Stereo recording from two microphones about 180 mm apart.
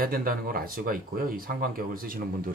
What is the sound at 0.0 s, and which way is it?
Speech, 55° right (ahead or behind).